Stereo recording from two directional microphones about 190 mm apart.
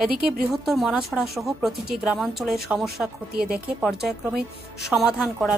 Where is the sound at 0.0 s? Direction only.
Centre (ahead or behind).